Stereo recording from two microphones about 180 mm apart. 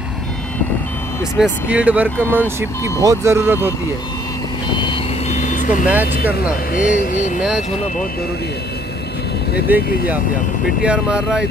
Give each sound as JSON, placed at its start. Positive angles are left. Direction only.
{"t": 1.3, "sound": "speech", "side_deg": -5}
{"t": 5.3, "sound": "vehicle", "side_deg": 45}
{"t": 6.7, "sound": "speech", "side_deg": 40}
{"t": 9.7, "sound": "speech", "side_deg": -10}